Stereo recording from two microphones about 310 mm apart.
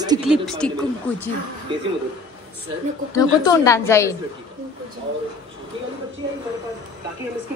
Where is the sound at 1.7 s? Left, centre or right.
Centre.